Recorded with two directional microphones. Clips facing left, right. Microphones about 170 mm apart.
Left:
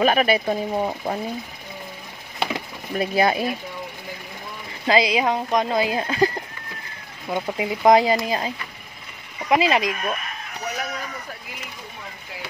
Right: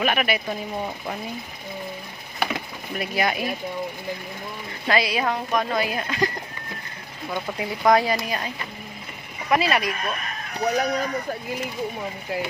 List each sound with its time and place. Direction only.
0.0 s speech: 35° left (ahead or behind)
3.0 s speech: 30° left (ahead or behind)
4.8 s speech: 20° left (ahead or behind)
7.3 s speech: 20° left (ahead or behind)
9.5 s speech: 20° left (ahead or behind)
10.6 s speech: 35° right (ahead or behind)